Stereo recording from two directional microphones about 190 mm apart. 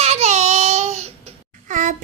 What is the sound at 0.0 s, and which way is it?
Babbling, 35° right (ahead or behind).